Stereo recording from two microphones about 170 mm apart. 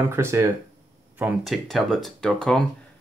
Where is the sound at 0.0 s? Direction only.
15° right (ahead or behind).